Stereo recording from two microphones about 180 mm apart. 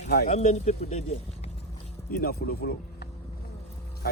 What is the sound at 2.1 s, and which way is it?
Speech, 55° left (ahead or behind).